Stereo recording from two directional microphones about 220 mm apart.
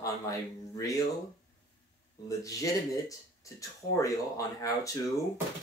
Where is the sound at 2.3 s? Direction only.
15° left (ahead or behind).